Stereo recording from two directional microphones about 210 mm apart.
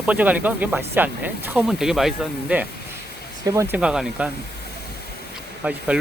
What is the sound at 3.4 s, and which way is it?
Speech, 15° right (ahead or behind).